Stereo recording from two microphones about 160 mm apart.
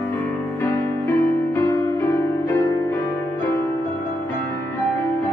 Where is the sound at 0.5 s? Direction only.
15° left (ahead or behind).